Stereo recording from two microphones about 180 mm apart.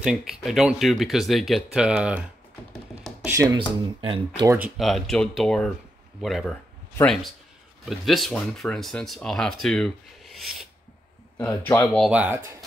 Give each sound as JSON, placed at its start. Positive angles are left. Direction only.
{"t": 0.0, "sound": "speech", "side_deg": -5}
{"t": 2.7, "sound": "music", "side_deg": 0}
{"t": 3.5, "sound": "speech", "side_deg": -30}
{"t": 4.5, "sound": "speech", "side_deg": -5}
{"t": 11.3, "sound": "speech", "side_deg": 15}
{"t": 12.1, "sound": "speech", "side_deg": -5}